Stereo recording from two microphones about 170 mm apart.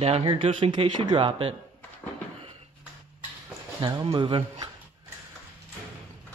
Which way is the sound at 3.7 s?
25° right (ahead or behind).